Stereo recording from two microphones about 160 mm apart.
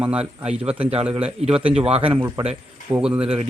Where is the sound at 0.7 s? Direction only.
40° right (ahead or behind).